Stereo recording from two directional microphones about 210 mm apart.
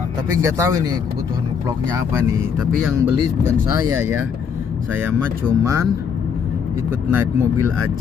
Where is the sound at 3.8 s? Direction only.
15° right (ahead or behind).